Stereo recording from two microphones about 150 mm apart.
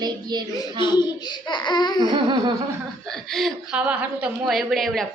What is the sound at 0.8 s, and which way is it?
Speech, 30° left (ahead or behind).